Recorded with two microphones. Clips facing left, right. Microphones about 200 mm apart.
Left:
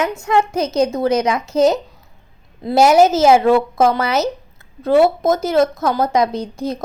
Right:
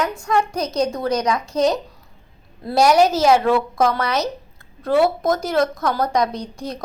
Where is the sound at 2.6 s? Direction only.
20° left (ahead or behind).